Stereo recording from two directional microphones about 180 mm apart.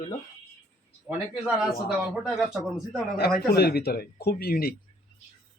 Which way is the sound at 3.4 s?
60° left (ahead or behind).